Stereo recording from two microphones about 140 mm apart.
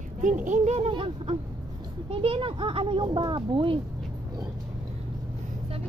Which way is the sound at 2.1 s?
40° right (ahead or behind).